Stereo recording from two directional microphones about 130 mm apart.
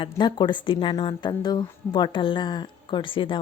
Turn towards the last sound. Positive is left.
turn(degrees=40)  # may be behind; listen again after turning